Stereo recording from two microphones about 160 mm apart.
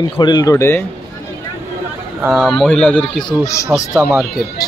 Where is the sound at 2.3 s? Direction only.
Centre (ahead or behind).